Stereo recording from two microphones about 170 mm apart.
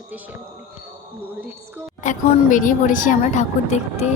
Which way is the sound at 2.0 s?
50° left (ahead or behind).